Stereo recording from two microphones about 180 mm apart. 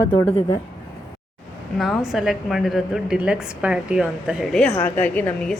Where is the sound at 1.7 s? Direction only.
Centre (ahead or behind).